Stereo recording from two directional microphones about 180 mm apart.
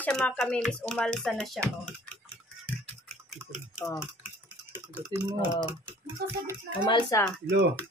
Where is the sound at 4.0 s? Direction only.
10° right (ahead or behind).